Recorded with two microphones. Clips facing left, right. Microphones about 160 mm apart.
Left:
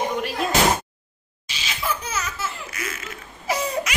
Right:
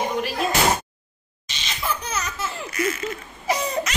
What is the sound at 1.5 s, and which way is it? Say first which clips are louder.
Laughter: even; 5° left (ahead or behind).